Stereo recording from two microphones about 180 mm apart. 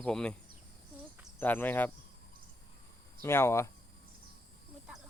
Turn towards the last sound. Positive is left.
turn(degrees=15)  # may be behind; listen again after turning